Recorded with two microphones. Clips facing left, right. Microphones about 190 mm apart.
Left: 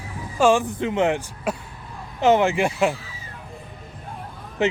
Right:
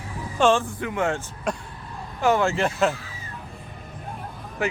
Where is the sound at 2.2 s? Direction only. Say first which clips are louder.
Left 3 dB; 20° left (ahead or behind).